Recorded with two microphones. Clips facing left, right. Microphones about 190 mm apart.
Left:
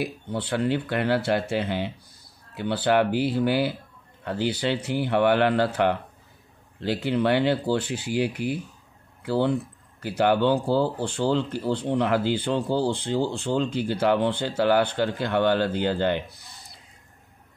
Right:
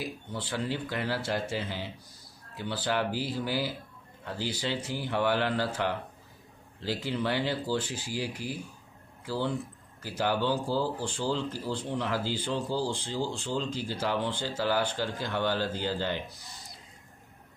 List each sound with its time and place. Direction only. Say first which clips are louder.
0.0 s speech: left 7 dB; 65° left (ahead or behind)